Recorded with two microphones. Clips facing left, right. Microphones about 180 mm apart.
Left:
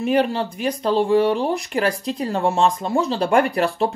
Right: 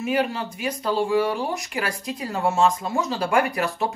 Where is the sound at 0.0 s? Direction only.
30° left (ahead or behind).